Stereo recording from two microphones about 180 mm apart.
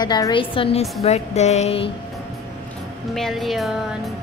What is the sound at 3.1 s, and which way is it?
A woman's voice, centre (ahead or behind).